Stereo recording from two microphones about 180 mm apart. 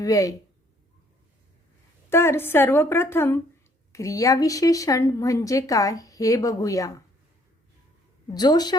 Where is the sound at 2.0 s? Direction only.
15° left (ahead or behind).